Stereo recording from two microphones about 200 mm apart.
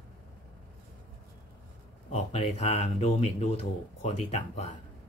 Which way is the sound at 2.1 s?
30° left (ahead or behind).